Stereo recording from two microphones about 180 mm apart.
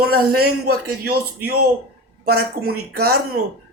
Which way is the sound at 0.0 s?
60° right (ahead or behind).